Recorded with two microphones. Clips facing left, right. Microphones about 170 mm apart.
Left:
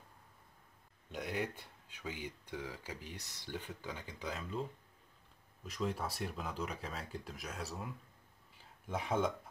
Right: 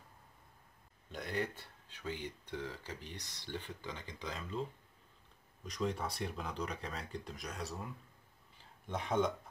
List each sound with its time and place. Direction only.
1.1 s speech: 10° left (ahead or behind)
5.7 s speech: 5° left (ahead or behind)